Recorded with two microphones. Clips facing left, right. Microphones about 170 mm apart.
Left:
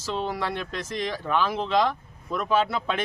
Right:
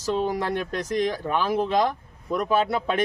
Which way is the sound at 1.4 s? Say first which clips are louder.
Right 3 dB; 10° right (ahead or behind).